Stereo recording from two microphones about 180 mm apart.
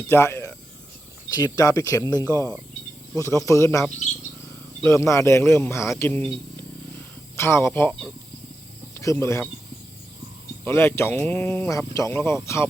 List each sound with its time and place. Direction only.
0.1 s speech: 15° left (ahead or behind)
7.3 s speech: 15° left (ahead or behind)
10.6 s speech: 15° left (ahead or behind)